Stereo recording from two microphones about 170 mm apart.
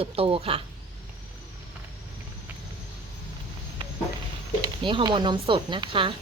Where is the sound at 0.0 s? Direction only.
35° right (ahead or behind).